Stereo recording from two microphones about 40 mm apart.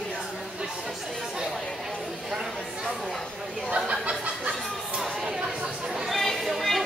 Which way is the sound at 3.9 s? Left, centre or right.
Right.